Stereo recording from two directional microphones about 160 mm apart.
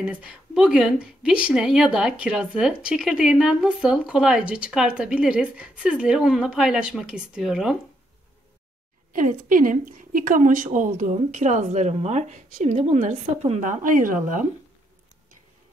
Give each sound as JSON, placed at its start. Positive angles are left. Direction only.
{"t": 0.0, "sound": "a woman's voice", "side_deg": -5}
{"t": 9.1, "sound": "a woman's voice", "side_deg": -55}